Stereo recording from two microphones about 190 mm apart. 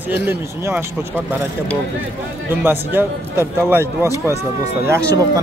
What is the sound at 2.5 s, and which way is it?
Speech, 10° right (ahead or behind).